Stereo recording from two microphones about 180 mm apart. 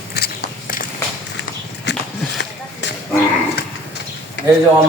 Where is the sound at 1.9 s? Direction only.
75° left (ahead or behind).